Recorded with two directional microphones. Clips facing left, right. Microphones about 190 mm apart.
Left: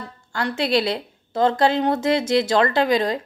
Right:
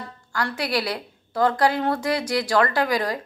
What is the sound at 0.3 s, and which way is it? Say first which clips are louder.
Speech: left 4 dB; 25° left (ahead or behind).